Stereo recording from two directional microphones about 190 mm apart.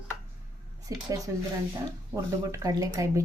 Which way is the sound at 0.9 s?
20° right (ahead or behind).